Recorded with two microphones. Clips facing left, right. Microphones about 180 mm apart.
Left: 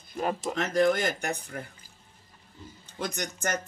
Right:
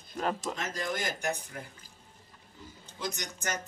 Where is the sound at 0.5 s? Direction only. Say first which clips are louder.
Left 11 dB; 65° left (ahead or behind).